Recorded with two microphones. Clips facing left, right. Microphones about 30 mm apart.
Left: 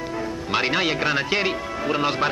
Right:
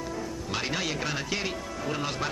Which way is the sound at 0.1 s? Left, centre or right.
Left.